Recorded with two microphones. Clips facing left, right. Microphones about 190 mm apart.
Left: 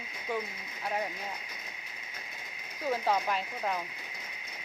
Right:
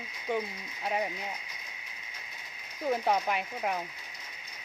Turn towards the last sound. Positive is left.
turn(degrees=-15)  # may be behind; listen again after turning